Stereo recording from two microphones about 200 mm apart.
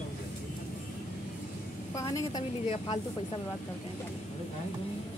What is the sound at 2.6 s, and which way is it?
Speech, 30° left (ahead or behind).